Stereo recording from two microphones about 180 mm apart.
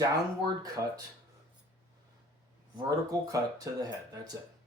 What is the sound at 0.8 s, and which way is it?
Speech, 15° right (ahead or behind).